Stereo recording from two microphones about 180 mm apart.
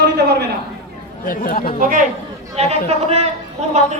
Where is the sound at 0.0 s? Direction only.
65° right (ahead or behind).